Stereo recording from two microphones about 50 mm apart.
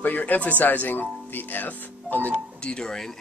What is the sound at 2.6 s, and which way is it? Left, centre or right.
Speech, centre.